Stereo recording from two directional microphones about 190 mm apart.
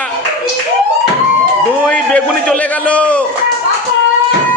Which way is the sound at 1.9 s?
5° left (ahead or behind).